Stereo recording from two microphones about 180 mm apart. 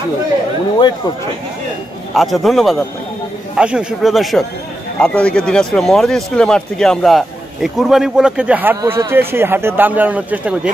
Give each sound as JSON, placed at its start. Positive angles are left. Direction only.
{"t": 2.1, "sound": "speech", "side_deg": 0}